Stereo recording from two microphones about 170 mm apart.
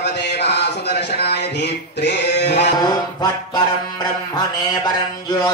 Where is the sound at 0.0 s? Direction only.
80° left.